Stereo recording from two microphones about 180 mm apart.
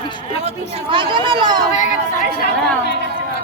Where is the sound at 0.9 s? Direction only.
30° right (ahead or behind).